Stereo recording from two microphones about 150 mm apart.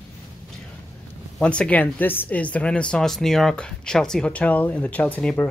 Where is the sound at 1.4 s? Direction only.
10° left (ahead or behind).